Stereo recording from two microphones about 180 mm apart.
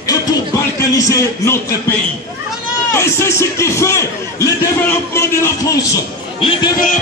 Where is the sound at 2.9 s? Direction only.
15° left (ahead or behind).